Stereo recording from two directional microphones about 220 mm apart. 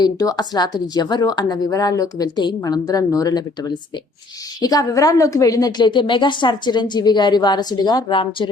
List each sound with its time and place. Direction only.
0.0 s a woman's voice: 15° left (ahead or behind)